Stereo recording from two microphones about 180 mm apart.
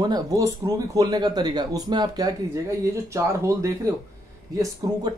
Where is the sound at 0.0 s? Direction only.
20° right (ahead or behind).